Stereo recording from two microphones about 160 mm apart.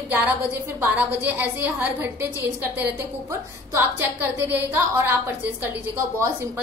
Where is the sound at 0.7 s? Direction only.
10° right (ahead or behind).